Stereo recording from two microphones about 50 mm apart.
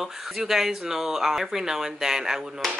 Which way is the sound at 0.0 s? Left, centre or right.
Centre.